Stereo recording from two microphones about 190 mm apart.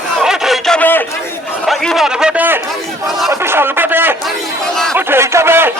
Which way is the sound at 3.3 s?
10° right (ahead or behind).